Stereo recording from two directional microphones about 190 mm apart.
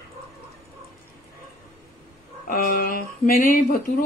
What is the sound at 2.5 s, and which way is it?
Speech, 45° left (ahead or behind).